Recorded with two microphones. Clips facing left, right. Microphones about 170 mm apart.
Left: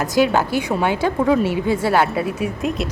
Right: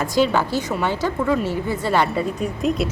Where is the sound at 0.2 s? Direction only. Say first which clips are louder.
Left 2 dB; 10° left (ahead or behind).